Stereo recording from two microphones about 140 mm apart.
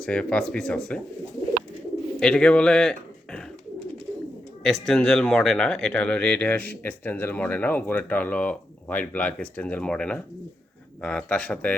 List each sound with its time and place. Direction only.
0.0 s speech: 5° left (ahead or behind)
2.2 s speech: 5° left (ahead or behind)
4.6 s speech: centre (ahead or behind)